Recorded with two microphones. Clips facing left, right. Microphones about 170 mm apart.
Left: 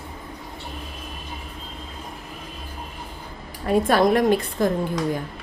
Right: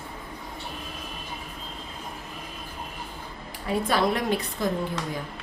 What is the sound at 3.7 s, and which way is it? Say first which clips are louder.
A woman's voice: left 6 dB; 50° left (ahead or behind).